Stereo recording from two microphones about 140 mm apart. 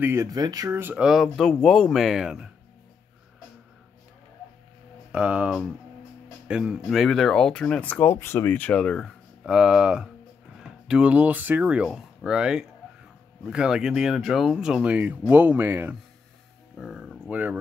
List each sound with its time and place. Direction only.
0.0 s speech: 20° right (ahead or behind)
0.7 s speech: 15° right (ahead or behind)
1.0 s speech: centre (ahead or behind)
5.1 s speech: 10° right (ahead or behind)
16.7 s a sound: centre (ahead or behind)